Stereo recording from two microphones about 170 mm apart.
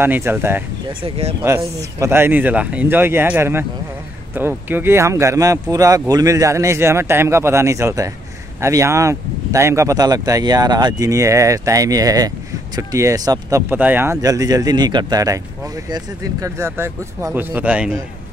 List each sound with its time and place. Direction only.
0.0 s speech: 15° right (ahead or behind)
1.0 s speech: 35° right (ahead or behind)
1.8 s speech: 15° right (ahead or behind)